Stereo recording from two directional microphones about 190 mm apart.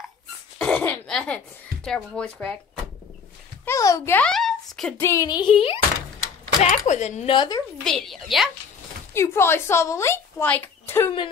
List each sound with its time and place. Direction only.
0.6 s throat clearing: 5° left (ahead or behind)
1.9 s speech: 5° left (ahead or behind)
3.6 s a child's voice: 15° left (ahead or behind); by 7.3 s 35° left (ahead or behind)
7.3 s a woman's voice: 20° left (ahead or behind)
7.8 s speech: centre (ahead or behind)
9.1 s speech: 15° left (ahead or behind)